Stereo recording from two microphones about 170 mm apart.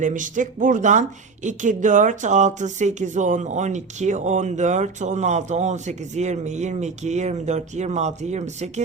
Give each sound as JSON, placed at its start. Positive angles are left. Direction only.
{"t": 0.0, "sound": "speech", "side_deg": -50}